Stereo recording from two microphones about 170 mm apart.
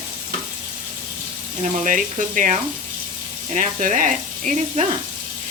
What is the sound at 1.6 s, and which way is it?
Speech, 45° right (ahead or behind).